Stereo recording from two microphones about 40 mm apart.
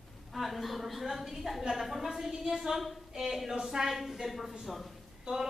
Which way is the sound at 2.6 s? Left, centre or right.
Centre.